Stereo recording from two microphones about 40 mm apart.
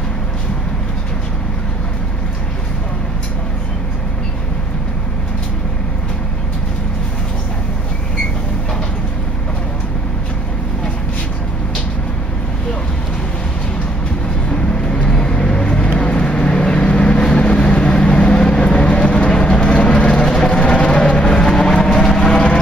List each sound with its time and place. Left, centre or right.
14.5 s vehicle: left